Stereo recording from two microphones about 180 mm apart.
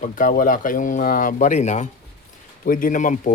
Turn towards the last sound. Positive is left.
turn(degrees=45)  # may be behind; listen again after turning